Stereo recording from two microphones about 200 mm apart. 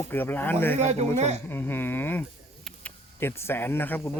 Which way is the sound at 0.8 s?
35° right (ahead or behind).